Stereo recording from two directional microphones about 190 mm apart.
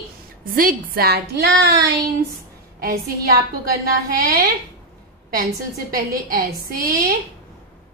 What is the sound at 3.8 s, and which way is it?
Speech, 50° right (ahead or behind).